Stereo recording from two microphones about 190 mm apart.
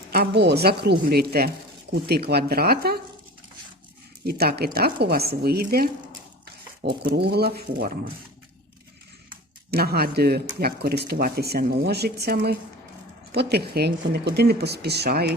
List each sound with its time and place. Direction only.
0.1 s speech: 60° right (ahead or behind)
4.2 s speech: 55° right (ahead or behind)
7.0 s speech: 60° right (ahead or behind)
9.7 s speech: 55° right (ahead or behind)